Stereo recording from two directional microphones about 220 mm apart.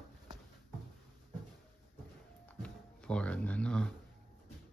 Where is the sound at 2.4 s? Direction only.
5° left (ahead or behind).